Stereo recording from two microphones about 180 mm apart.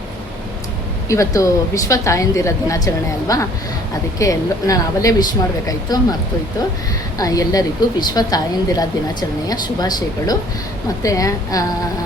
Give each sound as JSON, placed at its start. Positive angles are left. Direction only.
{"t": 1.0, "sound": "speech", "side_deg": 15}
{"t": 7.2, "sound": "speech", "side_deg": 20}